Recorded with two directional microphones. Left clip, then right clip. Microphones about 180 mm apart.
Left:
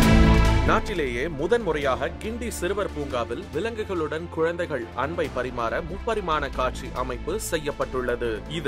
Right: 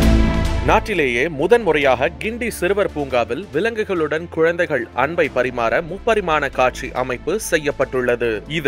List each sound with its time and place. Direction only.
0.7 s speech: 20° right (ahead or behind)